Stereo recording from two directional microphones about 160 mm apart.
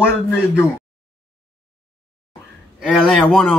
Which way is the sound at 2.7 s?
Centre (ahead or behind).